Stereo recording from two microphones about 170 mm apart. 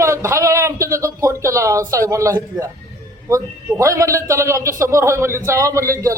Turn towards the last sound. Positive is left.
turn(degrees=-20)  # may be behind; listen again after turning